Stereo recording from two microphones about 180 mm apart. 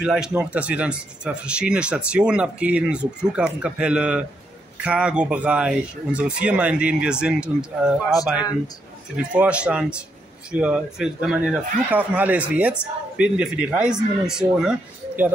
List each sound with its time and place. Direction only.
0.0 s speech: 5° right (ahead or behind)
9.1 s a man's voice: 5° right (ahead or behind)